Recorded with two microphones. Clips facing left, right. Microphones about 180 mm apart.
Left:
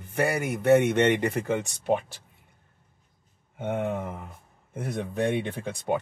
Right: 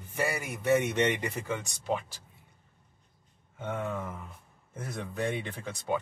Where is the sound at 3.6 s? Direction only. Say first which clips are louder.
Left 5 dB; 60° left (ahead or behind).